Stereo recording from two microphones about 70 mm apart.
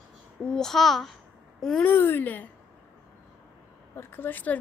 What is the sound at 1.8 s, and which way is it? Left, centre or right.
Speech, left.